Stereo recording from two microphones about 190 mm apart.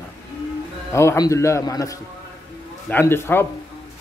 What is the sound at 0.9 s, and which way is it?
A man's voice, 15° left (ahead or behind).